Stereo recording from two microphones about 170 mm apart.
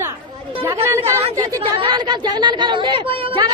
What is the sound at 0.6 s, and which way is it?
Chatter, 15° right (ahead or behind).